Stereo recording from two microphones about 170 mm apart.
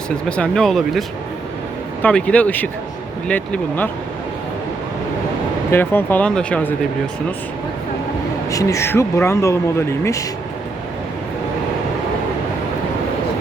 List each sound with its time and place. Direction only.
0.3 s speech: 5° left (ahead or behind)
5.7 s speech: 10° left (ahead or behind)
8.4 s speech: 20° left (ahead or behind)